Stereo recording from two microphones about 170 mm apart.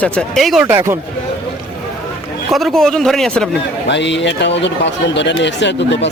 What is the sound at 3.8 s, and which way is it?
Speech, 90° left.